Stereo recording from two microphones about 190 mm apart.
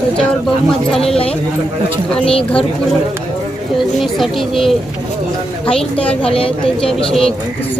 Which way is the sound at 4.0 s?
Centre (ahead or behind).